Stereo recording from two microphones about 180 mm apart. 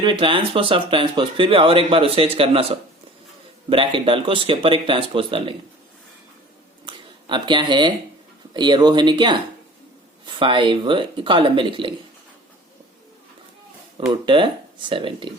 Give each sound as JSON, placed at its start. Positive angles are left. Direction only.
{"t": 0.0, "sound": "speech", "side_deg": -25}
{"t": 6.8, "sound": "a sound", "side_deg": -25}
{"t": 8.5, "sound": "speech", "side_deg": -25}
{"t": 14.3, "sound": "speech", "side_deg": -25}